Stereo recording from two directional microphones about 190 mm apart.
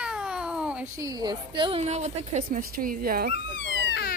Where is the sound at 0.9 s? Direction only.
20° right (ahead or behind); by 3.3 s 50° right (ahead or behind).